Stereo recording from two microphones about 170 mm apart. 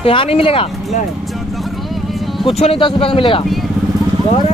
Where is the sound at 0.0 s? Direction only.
35° left (ahead or behind).